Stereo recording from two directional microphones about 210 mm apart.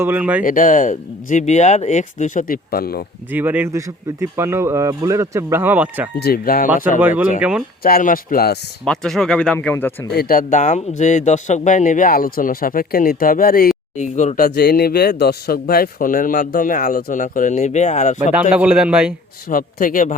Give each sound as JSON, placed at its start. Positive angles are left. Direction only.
{"t": 0.0, "sound": "speech", "side_deg": -10}
{"t": 0.4, "sound": "speech", "side_deg": 40}
{"t": 3.3, "sound": "speech", "side_deg": -10}
{"t": 6.1, "sound": "speech", "side_deg": 45}
{"t": 7.0, "sound": "speech", "side_deg": -10}
{"t": 7.8, "sound": "speech", "side_deg": 45}
{"t": 8.8, "sound": "speech", "side_deg": 0}
{"t": 10.1, "sound": "speech", "side_deg": 45}
{"t": 18.5, "sound": "speech", "side_deg": -5}
{"t": 19.5, "sound": "speech", "side_deg": 40}